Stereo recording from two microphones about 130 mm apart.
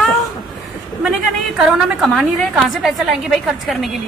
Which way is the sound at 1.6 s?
5° right (ahead or behind).